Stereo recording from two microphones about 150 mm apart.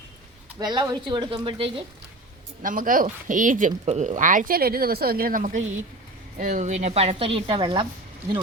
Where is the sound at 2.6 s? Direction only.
65° right (ahead or behind); by 7.8 s 35° right (ahead or behind).